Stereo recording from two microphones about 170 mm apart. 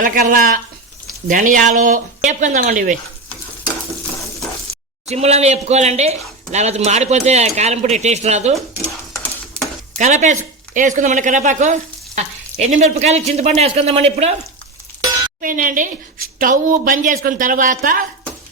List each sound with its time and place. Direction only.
0.0 s speech: 55° right (ahead or behind)
1.3 s frying: 50° right (ahead or behind)
5.0 s speech: 40° right (ahead or behind)
10.0 s frying: 45° right (ahead or behind)
15.4 s frying: 55° right (ahead or behind)